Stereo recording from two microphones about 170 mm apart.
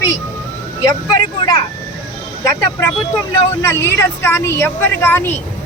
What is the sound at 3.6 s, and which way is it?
A woman's voice, 15° left (ahead or behind).